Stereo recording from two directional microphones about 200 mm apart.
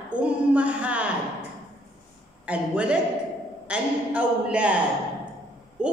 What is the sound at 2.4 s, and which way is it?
A man's voice, 5° right (ahead or behind).